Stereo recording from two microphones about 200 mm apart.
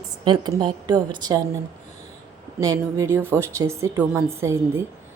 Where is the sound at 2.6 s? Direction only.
15° right (ahead or behind).